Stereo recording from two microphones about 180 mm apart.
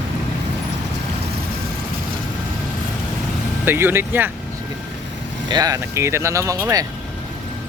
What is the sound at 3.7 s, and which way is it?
Speech, 10° right (ahead or behind).